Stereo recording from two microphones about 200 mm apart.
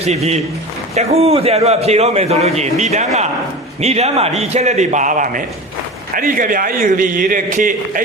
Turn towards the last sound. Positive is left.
turn(degrees=-40)  # may be behind; listen again after turning